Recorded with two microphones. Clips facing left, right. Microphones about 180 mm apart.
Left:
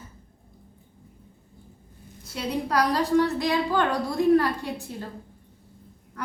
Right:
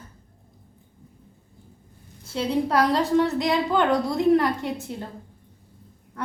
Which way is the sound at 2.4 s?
25° right (ahead or behind).